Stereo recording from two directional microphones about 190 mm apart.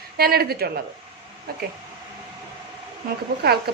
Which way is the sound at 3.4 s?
55° right (ahead or behind).